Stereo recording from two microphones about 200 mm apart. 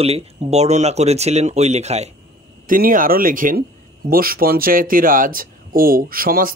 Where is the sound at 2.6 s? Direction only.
45° right (ahead or behind).